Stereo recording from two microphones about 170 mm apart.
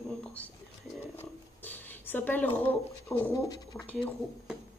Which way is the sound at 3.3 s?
25° left (ahead or behind).